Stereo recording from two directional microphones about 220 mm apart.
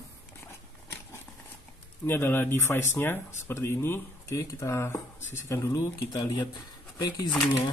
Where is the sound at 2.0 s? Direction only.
10° left (ahead or behind).